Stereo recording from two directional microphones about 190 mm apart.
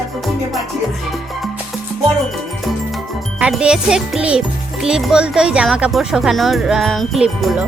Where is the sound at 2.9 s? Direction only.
5° right (ahead or behind).